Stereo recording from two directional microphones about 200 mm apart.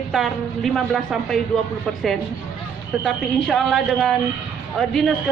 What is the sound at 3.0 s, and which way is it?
A woman's voice, centre (ahead or behind).